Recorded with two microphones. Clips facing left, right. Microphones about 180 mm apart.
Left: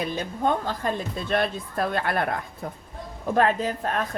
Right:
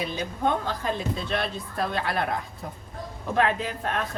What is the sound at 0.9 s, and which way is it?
Speech, 45° left (ahead or behind).